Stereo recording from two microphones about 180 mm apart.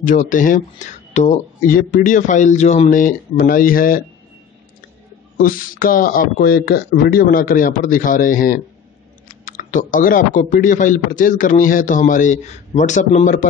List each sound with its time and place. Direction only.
0.0 s speech: 45° left (ahead or behind)
5.4 s speech: 50° left (ahead or behind)